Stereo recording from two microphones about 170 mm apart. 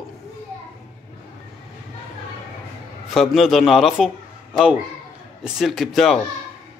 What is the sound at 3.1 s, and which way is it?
Speech, centre (ahead or behind).